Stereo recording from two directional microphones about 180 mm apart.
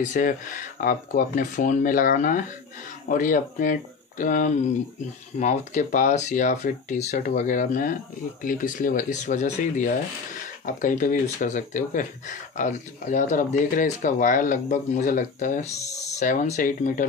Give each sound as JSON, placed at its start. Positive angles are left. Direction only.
{"t": 0.0, "sound": "speech", "side_deg": 45}